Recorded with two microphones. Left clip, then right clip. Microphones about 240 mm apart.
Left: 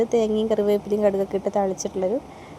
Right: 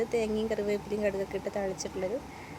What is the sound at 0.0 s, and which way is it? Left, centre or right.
A woman's voice, left.